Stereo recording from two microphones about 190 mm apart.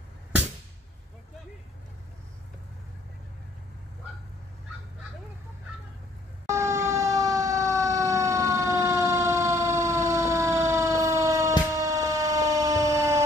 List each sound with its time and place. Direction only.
6.4 s fire engine: 15° right (ahead or behind)